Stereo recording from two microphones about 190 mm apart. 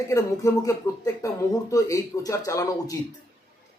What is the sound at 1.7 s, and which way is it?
A man's voice, 15° left (ahead or behind).